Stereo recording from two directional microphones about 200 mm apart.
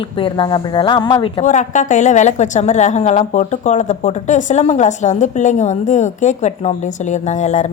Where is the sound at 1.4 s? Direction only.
40° left (ahead or behind).